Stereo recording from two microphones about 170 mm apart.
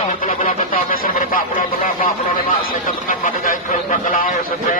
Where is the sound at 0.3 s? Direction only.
55° left (ahead or behind).